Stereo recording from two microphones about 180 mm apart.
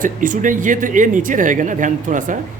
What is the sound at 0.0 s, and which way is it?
Speech, 45° right (ahead or behind).